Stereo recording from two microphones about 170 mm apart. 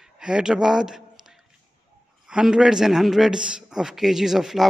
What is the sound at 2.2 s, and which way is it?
A man's voice, 5° right (ahead or behind).